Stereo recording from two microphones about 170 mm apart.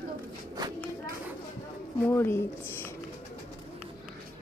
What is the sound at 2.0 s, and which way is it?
Speech, 15° left (ahead or behind).